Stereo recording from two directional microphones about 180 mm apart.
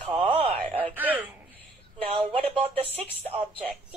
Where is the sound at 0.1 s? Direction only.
30° right (ahead or behind).